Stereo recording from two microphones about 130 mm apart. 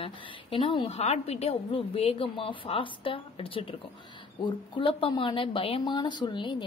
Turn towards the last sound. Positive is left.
turn(degrees=35)  # may be behind; listen again after turning